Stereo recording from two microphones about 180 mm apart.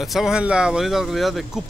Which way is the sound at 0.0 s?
Centre (ahead or behind).